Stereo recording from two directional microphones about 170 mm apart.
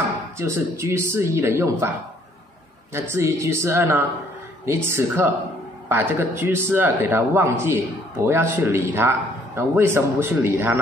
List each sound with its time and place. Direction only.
0.4 s a man's voice: 15° right (ahead or behind)